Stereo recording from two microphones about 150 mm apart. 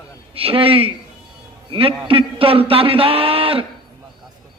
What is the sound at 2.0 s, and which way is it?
Speech, 40° right (ahead or behind).